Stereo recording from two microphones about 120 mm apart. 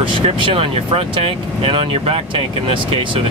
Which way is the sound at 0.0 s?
45° right (ahead or behind).